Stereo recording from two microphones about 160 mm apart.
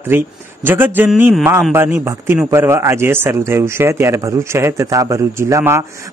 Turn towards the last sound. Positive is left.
turn(degrees=-15)  # may be behind; listen again after turning